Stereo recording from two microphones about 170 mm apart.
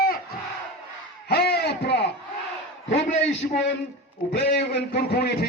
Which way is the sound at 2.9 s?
90° left.